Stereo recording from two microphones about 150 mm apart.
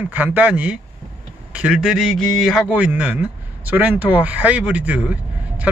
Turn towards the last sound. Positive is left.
turn(degrees=-10)  # may be behind; listen again after turning